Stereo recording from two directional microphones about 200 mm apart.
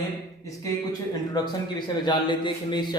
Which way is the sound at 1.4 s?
20° left (ahead or behind).